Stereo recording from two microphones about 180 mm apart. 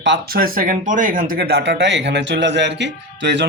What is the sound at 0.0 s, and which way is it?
Speech, 65° right (ahead or behind).